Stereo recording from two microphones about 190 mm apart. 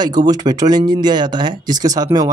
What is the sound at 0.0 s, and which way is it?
Speech, 20° right (ahead or behind).